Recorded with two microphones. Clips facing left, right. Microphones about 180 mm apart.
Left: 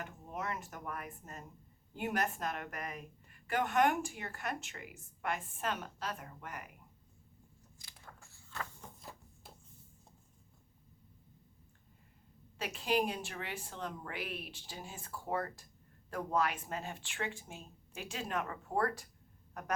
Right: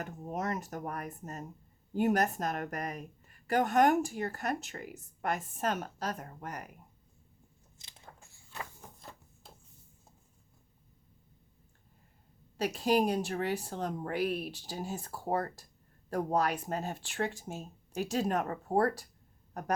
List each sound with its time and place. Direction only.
0.0 s speech: 40° right (ahead or behind)
7.8 s biting: 25° right (ahead or behind)
9.0 s a sound: centre (ahead or behind)
12.5 s speech: 40° right (ahead or behind)